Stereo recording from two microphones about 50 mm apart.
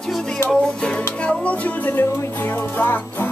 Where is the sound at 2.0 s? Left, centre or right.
Left.